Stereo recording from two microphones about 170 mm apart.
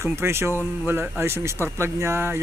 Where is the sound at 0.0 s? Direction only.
15° right (ahead or behind).